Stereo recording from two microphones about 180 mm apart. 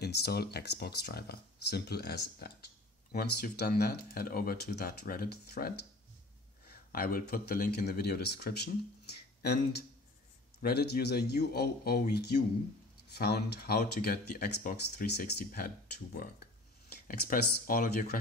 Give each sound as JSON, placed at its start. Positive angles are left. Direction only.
{"t": 0.0, "sound": "speech", "side_deg": 65}
{"t": 6.7, "sound": "speech", "side_deg": 55}
{"t": 16.9, "sound": "speech", "side_deg": 60}